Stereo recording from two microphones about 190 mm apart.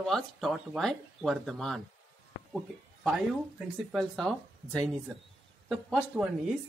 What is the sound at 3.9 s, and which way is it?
Speech, centre (ahead or behind).